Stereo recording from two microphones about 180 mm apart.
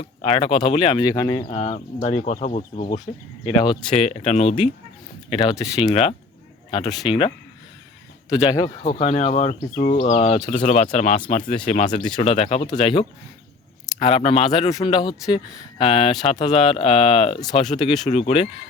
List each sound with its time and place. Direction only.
0.0 s speech: 30° left (ahead or behind)
3.4 s speech: 30° left (ahead or behind)
5.3 s speech: 25° left (ahead or behind)
8.8 s speech: 35° left (ahead or behind)
14.7 s speech: 20° left (ahead or behind)
18.1 s speech: 35° left (ahead or behind)